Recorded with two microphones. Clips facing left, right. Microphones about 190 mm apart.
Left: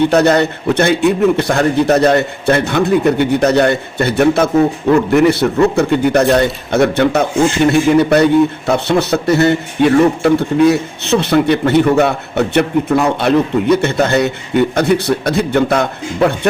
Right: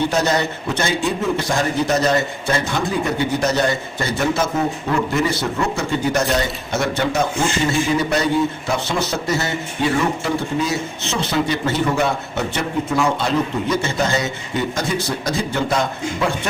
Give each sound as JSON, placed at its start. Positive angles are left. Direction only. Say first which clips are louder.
{"t": 0.1, "sound": "a man's voice", "louder": "left 8 dB", "side_deg": 60}